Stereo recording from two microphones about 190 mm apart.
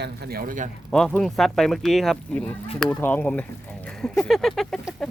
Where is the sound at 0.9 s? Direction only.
5° left (ahead or behind).